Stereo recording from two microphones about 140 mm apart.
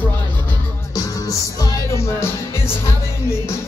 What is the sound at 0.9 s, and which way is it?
Music, 25° left (ahead or behind).